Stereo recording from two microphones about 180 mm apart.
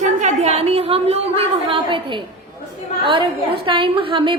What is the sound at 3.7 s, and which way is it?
Speech, 30° right (ahead or behind).